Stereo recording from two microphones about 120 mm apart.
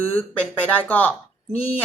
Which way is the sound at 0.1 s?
15° left (ahead or behind).